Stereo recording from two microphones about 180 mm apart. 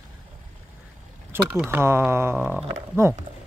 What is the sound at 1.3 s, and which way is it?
Speech, 10° right (ahead or behind).